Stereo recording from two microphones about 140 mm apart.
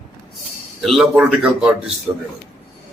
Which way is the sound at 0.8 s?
Centre (ahead or behind).